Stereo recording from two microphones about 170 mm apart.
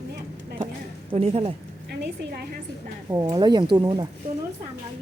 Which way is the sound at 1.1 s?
35° right (ahead or behind).